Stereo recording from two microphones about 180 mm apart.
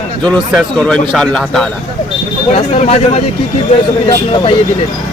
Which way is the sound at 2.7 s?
35° left (ahead or behind).